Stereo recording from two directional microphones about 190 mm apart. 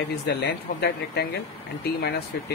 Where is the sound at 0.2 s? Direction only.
60° left (ahead or behind).